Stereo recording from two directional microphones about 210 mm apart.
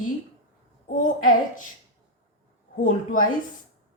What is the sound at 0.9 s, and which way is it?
Speech, 40° left (ahead or behind).